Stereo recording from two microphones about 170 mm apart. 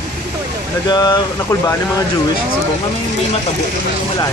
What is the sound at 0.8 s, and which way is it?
Speech, 25° left (ahead or behind).